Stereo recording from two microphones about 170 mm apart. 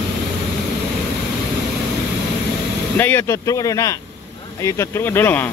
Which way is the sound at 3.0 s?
10° left (ahead or behind).